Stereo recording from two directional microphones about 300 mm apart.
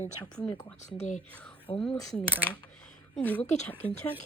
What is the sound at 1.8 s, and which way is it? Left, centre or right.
Speech, centre.